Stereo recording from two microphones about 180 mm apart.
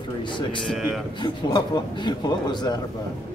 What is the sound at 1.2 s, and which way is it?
A man's voice, 25° left (ahead or behind).